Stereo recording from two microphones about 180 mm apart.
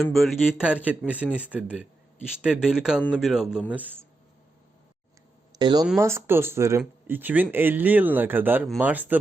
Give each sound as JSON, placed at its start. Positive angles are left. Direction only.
{"t": 0.0, "sound": "speech", "side_deg": 0}
{"t": 5.5, "sound": "speech", "side_deg": -25}